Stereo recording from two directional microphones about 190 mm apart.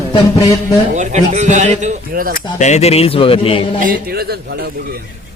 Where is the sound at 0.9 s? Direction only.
40° right (ahead or behind).